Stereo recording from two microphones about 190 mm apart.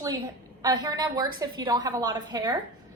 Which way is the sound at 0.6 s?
20° right (ahead or behind).